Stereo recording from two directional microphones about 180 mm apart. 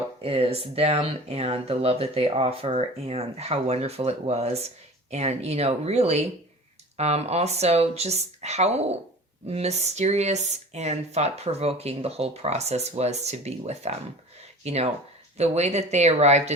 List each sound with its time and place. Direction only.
0.2 s speech: 35° right (ahead or behind)